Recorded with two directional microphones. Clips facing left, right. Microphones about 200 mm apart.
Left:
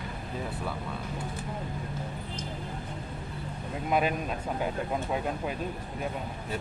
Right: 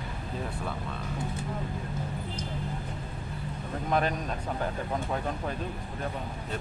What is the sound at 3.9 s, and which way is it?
Speech, 10° left (ahead or behind).